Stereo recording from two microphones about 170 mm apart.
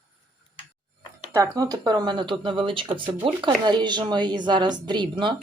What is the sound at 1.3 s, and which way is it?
Speech, 20° right (ahead or behind).